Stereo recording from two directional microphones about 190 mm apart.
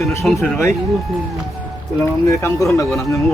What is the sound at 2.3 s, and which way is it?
Speech, 15° left (ahead or behind).